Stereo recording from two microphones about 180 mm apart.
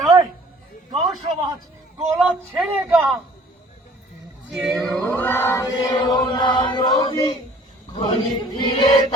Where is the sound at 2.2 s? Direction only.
Centre (ahead or behind).